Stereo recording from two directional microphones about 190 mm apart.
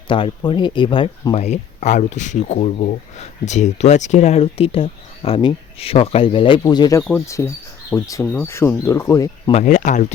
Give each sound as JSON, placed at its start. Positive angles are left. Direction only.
{"t": 0.1, "sound": "speech", "side_deg": 25}
{"t": 9.5, "sound": "speech", "side_deg": 35}